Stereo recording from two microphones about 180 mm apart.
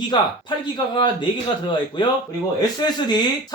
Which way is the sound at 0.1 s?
25° left (ahead or behind).